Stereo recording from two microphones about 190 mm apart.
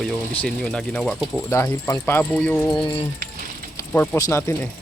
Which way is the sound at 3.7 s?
10° left (ahead or behind).